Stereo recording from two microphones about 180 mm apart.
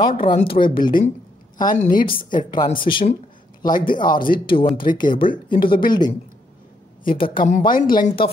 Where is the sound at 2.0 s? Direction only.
30° left (ahead or behind).